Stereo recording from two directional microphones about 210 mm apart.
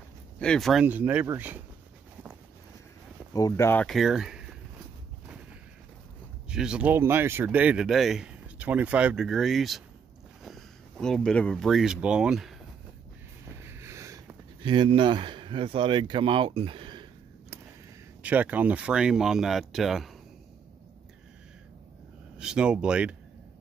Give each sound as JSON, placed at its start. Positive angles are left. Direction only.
{"t": 0.4, "sound": "speech", "side_deg": 5}
{"t": 3.3, "sound": "speech", "side_deg": 15}
{"t": 6.5, "sound": "speech", "side_deg": -5}
{"t": 13.6, "sound": "a sound", "side_deg": -10}
{"t": 18.2, "sound": "speech", "side_deg": -5}
{"t": 22.4, "sound": "speech", "side_deg": -5}